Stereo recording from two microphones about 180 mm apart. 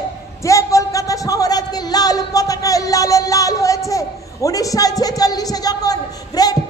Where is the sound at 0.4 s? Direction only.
15° left (ahead or behind).